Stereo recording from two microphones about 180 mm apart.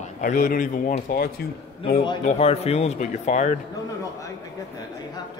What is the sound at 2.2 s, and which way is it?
A man's voice, 35° left (ahead or behind).